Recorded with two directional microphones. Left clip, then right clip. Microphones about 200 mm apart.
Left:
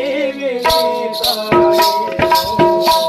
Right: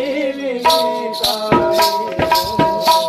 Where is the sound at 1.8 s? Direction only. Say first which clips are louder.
Left 2 dB; 20° left (ahead or behind).